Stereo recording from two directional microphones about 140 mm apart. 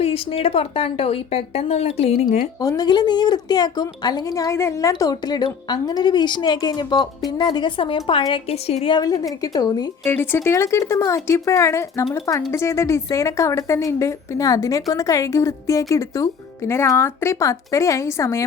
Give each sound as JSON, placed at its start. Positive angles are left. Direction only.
{"t": 0.0, "sound": "speech", "side_deg": 40}
{"t": 2.6, "sound": "a woman's voice", "side_deg": 25}
{"t": 9.0, "sound": "a woman's voice", "side_deg": 25}
{"t": 10.0, "sound": "a woman's voice", "side_deg": 15}